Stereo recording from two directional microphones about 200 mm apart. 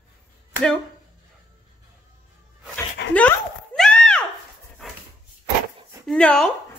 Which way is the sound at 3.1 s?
5° left (ahead or behind).